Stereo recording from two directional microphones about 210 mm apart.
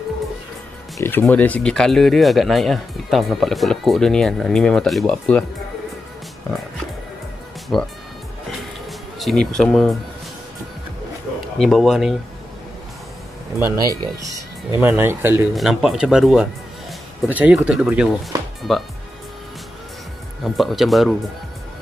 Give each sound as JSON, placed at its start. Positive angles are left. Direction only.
{"t": 0.9, "sound": "speech", "side_deg": 10}
{"t": 7.7, "sound": "speech", "side_deg": 0}
{"t": 9.2, "sound": "speech", "side_deg": 0}
{"t": 11.5, "sound": "speech", "side_deg": 0}
{"t": 13.6, "sound": "speech", "side_deg": -15}
{"t": 20.5, "sound": "speech", "side_deg": 0}